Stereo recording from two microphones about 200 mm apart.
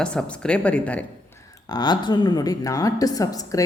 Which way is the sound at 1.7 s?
20° left (ahead or behind).